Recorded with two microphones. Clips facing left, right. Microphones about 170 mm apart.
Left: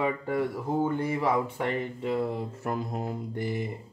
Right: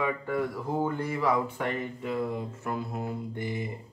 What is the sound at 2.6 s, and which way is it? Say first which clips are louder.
Speech: left 2 dB; 40° left (ahead or behind).